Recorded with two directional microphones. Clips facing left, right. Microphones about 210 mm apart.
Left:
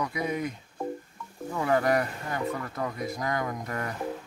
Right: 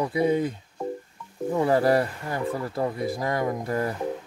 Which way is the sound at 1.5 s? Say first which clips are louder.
Right 4 dB; 30° right (ahead or behind).